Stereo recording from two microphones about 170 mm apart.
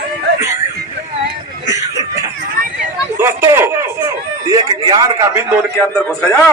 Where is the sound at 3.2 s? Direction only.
15° right (ahead or behind).